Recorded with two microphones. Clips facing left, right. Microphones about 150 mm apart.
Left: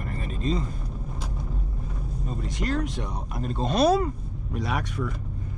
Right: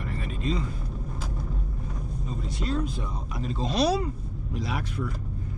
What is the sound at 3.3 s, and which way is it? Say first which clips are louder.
Speech: left 2 dB; 50° left (ahead or behind).